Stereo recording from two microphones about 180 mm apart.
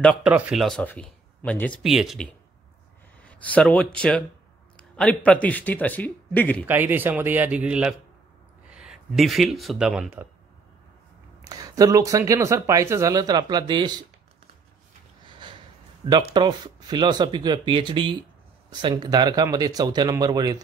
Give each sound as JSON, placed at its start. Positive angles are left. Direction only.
{"t": 0.2, "sound": "speech", "side_deg": -5}
{"t": 6.6, "sound": "speech", "side_deg": -10}
{"t": 11.4, "sound": "speech", "side_deg": -20}
{"t": 15.2, "sound": "snort", "side_deg": -25}
{"t": 16.0, "sound": "speech", "side_deg": -30}